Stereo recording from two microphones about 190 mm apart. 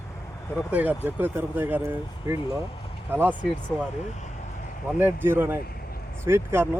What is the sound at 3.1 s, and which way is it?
Speech, 10° right (ahead or behind).